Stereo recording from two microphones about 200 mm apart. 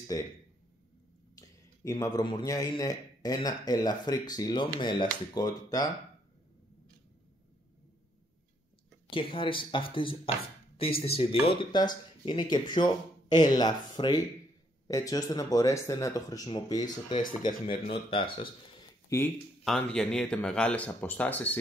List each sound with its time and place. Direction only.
0.1 s speech: 15° left (ahead or behind)
1.9 s speech: 20° left (ahead or behind)
9.1 s speech: 25° left (ahead or behind)
19.0 s speech: 10° left (ahead or behind)